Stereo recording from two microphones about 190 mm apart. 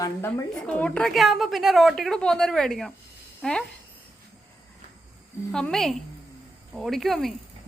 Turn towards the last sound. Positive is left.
turn(degrees=0)  # may be behind; listen again after turning